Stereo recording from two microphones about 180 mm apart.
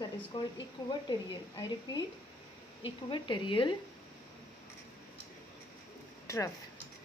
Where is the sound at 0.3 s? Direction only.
30° left (ahead or behind).